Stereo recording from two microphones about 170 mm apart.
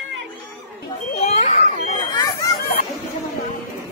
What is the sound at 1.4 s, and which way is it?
Children playing, 45° left (ahead or behind).